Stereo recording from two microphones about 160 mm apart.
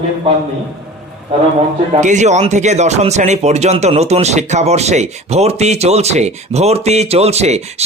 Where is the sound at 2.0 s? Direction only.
50° right (ahead or behind).